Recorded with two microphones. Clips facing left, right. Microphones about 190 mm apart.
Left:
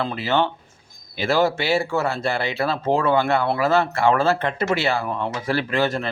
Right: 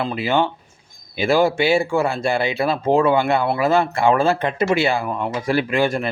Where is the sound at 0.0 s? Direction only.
15° right (ahead or behind).